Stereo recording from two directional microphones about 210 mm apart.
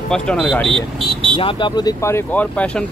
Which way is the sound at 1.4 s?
25° left (ahead or behind).